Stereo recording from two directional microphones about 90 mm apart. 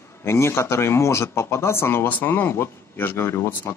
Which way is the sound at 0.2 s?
30° left (ahead or behind).